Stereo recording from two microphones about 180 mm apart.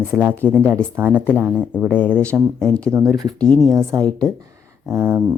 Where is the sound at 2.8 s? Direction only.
15° right (ahead or behind).